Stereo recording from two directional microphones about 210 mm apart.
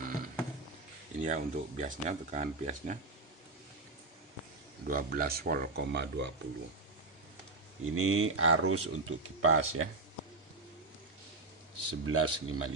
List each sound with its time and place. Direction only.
0.0 s a sound: 40° right (ahead or behind)
1.2 s speech: 35° right (ahead or behind)
4.9 s speech: 45° right (ahead or behind)
7.9 s speech: 80° right
11.9 s speech: 90° right